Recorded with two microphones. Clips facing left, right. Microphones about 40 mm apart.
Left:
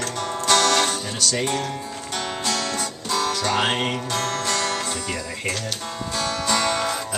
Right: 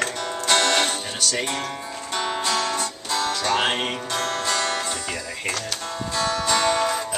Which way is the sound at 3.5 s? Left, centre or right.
Centre.